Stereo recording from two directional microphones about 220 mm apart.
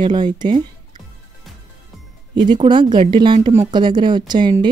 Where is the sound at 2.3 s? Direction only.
20° right (ahead or behind).